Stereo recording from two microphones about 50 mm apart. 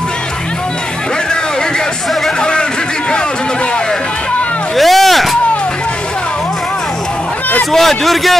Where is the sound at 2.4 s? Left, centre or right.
Centre.